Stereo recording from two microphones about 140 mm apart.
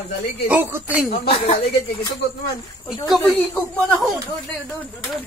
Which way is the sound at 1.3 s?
50° left (ahead or behind).